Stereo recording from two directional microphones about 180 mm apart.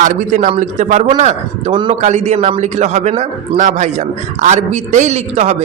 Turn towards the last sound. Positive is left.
turn(degrees=-35)  # may be behind; listen again after turning